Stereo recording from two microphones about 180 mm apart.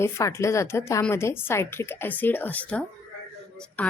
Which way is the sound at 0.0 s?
15° left (ahead or behind).